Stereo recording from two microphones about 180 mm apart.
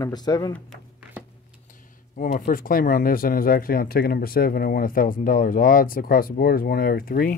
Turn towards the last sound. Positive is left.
turn(degrees=55)  # may be behind; listen again after turning